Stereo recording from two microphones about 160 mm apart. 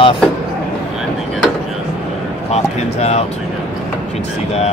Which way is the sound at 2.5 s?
40° left (ahead or behind).